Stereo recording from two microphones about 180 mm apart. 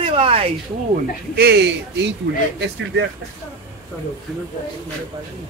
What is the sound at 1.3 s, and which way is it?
Speech, 65° right (ahead or behind).